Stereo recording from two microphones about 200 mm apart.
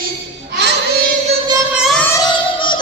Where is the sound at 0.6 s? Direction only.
60° right (ahead or behind).